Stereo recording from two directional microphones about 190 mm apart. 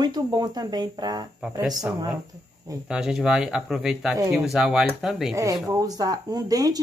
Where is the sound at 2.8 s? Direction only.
5° right (ahead or behind).